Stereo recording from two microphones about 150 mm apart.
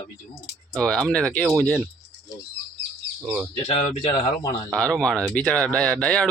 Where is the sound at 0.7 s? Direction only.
5° left (ahead or behind).